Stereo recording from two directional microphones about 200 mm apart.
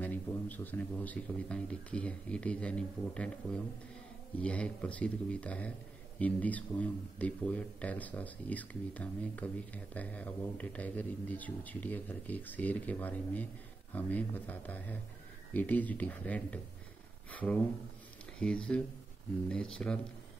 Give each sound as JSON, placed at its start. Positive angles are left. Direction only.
{"t": 0.0, "sound": "speech", "side_deg": 10}
{"t": 4.4, "sound": "speech", "side_deg": 5}